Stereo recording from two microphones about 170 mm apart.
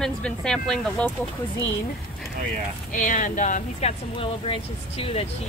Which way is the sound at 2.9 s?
50° left (ahead or behind).